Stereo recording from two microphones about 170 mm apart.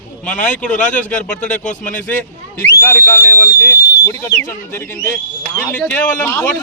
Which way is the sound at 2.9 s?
15° left (ahead or behind).